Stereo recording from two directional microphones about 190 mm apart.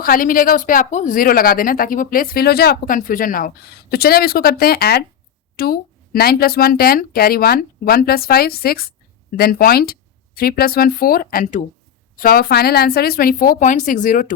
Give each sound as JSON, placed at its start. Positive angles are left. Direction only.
{"t": 0.0, "sound": "speech", "side_deg": 50}